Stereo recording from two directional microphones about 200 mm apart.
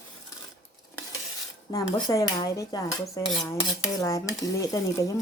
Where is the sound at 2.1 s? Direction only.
15° left (ahead or behind).